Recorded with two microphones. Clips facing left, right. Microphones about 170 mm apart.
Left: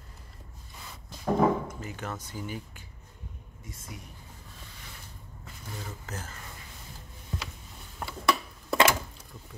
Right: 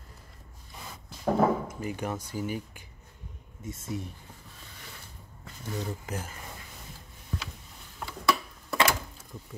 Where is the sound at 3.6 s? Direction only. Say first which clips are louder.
Right 10 dB; 25° right (ahead or behind).